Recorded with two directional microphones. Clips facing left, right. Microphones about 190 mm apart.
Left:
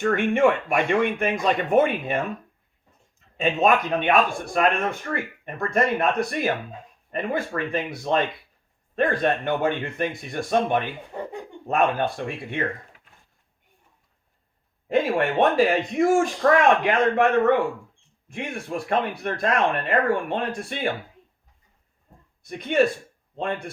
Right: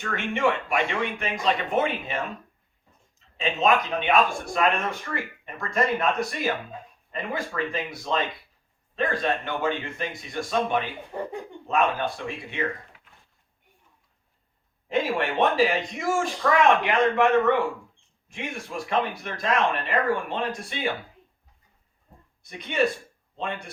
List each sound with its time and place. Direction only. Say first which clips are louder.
0.0 s a man's voice: left 6 dB; 50° left (ahead or behind)
14.8 s a man's voice: left 4 dB; 50° left (ahead or behind)
18.3 s a man's voice: left 4 dB; 55° left (ahead or behind)
22.4 s a man's voice: left 4 dB; 50° left (ahead or behind)